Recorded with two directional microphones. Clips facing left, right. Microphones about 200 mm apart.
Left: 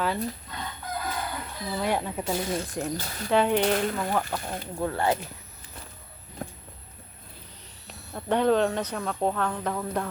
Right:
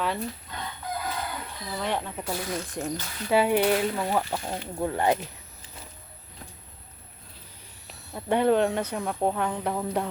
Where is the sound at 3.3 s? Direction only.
10° right (ahead or behind).